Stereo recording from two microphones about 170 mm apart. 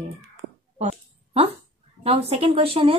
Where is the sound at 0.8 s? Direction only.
40° right (ahead or behind).